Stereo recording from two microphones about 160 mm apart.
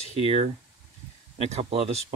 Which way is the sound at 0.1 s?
40° right (ahead or behind).